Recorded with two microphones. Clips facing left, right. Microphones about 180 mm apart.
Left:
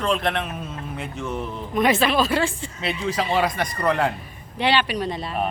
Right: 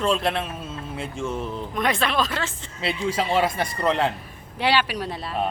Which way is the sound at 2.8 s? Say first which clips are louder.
Even; 30° right (ahead or behind).